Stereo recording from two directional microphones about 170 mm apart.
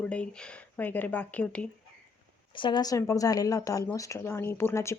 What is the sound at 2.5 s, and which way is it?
Speech, 30° left (ahead or behind).